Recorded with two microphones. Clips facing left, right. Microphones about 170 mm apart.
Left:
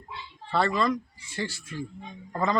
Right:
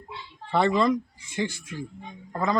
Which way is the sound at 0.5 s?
20° right (ahead or behind).